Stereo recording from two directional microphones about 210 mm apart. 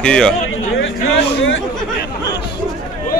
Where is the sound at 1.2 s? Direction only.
65° left (ahead or behind).